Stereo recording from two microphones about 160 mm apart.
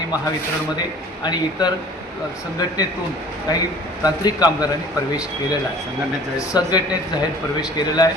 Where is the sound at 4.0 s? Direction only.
25° left (ahead or behind).